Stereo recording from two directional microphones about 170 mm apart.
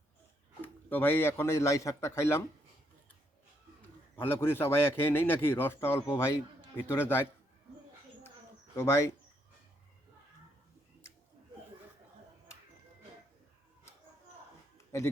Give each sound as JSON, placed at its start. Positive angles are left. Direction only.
{"t": 0.6, "sound": "a man's voice", "side_deg": 10}
{"t": 4.2, "sound": "a man's voice", "side_deg": 15}
{"t": 8.7, "sound": "speech", "side_deg": 15}
{"t": 14.8, "sound": "a sound", "side_deg": 15}